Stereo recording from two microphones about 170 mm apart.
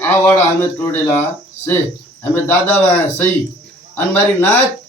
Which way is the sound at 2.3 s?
10° left (ahead or behind).